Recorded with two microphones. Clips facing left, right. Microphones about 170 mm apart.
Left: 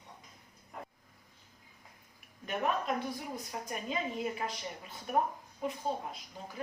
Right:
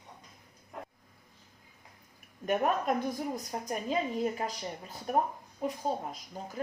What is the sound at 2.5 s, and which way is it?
A woman's voice, 45° right (ahead or behind).